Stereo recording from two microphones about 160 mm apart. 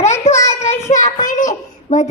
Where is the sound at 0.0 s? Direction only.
45° left (ahead or behind).